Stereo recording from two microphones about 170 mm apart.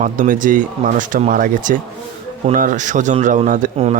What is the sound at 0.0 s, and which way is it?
Speech, 50° right (ahead or behind).